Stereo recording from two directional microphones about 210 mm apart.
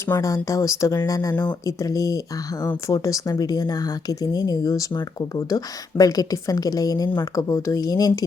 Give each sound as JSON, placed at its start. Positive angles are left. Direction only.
{"t": 0.1, "sound": "speech", "side_deg": 15}